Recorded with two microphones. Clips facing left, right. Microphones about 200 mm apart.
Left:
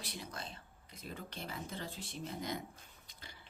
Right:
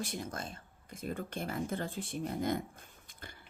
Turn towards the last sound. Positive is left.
turn(degrees=-50)  # may be behind; listen again after turning